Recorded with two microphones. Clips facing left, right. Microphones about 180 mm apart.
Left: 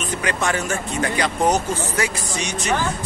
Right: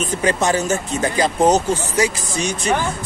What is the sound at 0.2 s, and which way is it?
Speech, 25° right (ahead or behind).